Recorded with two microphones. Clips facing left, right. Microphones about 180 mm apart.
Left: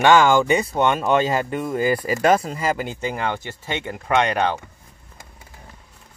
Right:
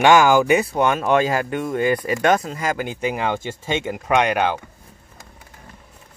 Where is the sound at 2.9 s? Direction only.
15° right (ahead or behind).